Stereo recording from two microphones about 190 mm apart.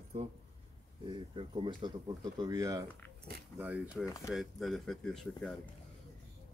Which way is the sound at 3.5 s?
10° right (ahead or behind).